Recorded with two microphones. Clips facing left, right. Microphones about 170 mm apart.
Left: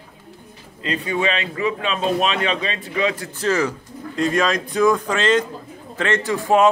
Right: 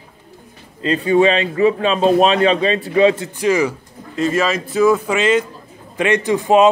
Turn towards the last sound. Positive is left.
turn(degrees=-20)  # may be behind; listen again after turning